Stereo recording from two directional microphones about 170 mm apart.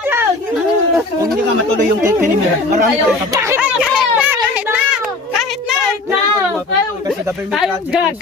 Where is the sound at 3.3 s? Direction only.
15° right (ahead or behind).